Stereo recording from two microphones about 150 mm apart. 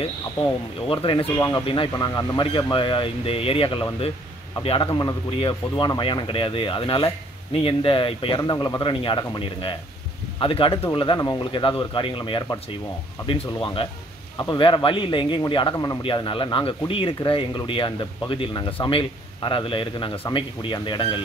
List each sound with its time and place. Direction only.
0.8 s speech: 35° left (ahead or behind)
4.9 s speech: 30° left (ahead or behind)